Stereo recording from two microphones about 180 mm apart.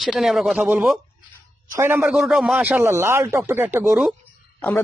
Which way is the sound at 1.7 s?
15° right (ahead or behind).